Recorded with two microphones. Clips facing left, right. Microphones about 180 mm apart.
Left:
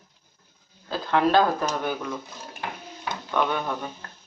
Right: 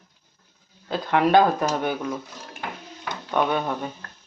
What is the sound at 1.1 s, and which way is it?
Speech, 15° right (ahead or behind).